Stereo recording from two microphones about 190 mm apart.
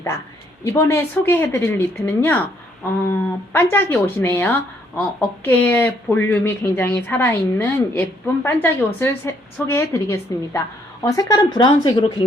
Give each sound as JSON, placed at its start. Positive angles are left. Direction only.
{"t": 0.6, "sound": "speech", "side_deg": 15}